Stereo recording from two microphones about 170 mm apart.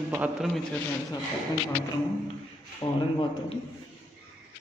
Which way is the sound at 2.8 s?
30° left (ahead or behind).